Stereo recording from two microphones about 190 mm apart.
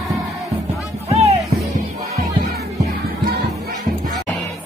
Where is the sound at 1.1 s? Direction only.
35° right (ahead or behind).